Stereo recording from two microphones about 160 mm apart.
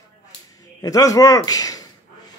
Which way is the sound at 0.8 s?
20° left (ahead or behind).